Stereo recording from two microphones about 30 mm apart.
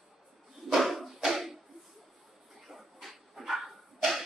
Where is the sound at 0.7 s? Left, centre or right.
Centre.